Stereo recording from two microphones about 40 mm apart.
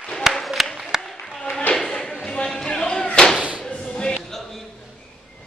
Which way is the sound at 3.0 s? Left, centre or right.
Left.